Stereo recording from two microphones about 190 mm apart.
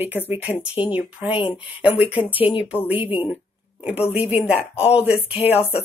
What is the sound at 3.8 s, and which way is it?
Speech, 5° right (ahead or behind).